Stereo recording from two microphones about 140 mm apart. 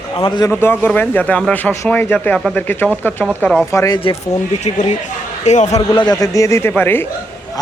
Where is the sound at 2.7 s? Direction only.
15° left (ahead or behind).